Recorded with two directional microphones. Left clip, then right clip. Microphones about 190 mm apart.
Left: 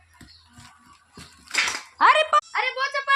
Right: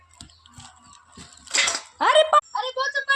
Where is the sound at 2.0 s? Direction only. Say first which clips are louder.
Even; 5° left (ahead or behind).